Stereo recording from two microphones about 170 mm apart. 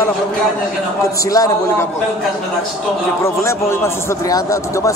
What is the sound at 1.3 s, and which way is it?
Speech, 20° left (ahead or behind).